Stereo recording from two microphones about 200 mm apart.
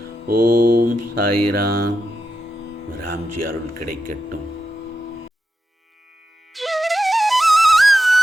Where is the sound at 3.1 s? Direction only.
45° right (ahead or behind).